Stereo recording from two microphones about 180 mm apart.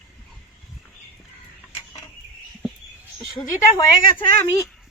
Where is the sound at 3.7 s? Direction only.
20° left (ahead or behind).